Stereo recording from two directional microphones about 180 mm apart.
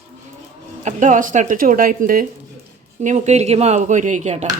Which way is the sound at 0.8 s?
40° right (ahead or behind).